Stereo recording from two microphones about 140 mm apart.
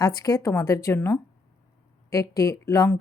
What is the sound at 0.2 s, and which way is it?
Speech, 25° left (ahead or behind).